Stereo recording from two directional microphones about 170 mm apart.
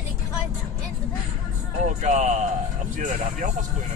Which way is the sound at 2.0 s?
50° right (ahead or behind).